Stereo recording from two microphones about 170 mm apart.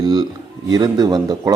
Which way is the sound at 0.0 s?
25° right (ahead or behind).